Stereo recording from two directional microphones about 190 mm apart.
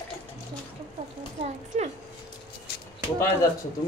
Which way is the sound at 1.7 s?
35° right (ahead or behind).